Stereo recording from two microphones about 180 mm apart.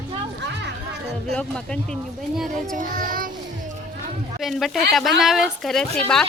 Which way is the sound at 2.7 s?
50° right (ahead or behind).